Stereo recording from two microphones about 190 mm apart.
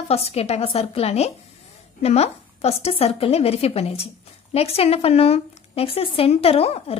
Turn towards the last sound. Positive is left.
turn(degrees=30)  # may be behind; listen again after turning